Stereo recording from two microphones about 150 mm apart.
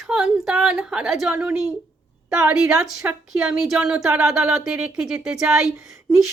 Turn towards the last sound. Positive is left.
turn(degrees=-5)  # may be behind; listen again after turning